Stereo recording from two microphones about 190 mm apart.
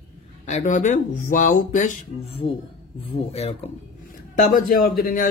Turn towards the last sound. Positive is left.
turn(degrees=50)  # may be behind; listen again after turning